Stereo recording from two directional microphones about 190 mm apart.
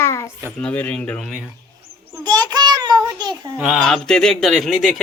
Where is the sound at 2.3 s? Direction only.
20° right (ahead or behind).